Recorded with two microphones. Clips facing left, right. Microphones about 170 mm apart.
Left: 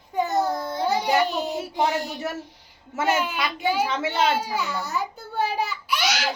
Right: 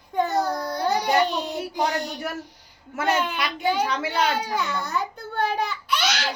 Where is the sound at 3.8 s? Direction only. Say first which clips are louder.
Left 1 dB; 25° left (ahead or behind).